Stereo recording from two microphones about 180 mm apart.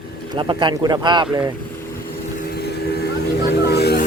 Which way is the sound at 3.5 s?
65° left (ahead or behind).